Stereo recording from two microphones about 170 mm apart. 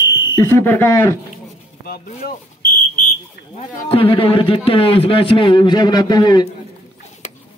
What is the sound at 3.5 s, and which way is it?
A man's voice, 35° left (ahead or behind).